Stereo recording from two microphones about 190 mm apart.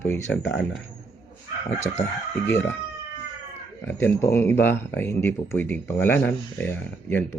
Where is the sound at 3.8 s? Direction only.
10° left (ahead or behind).